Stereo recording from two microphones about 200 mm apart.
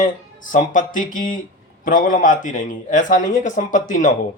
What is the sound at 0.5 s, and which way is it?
Speech, 40° left (ahead or behind).